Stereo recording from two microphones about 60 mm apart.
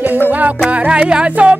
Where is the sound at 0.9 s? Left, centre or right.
Centre.